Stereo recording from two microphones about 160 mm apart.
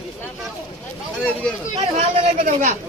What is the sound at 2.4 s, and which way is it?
Speech, 50° right (ahead or behind).